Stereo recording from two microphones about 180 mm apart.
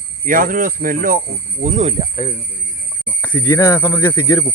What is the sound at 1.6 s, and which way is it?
Speech, 40° right (ahead or behind).